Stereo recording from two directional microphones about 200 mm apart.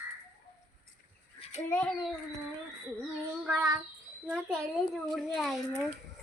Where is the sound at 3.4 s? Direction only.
10° right (ahead or behind).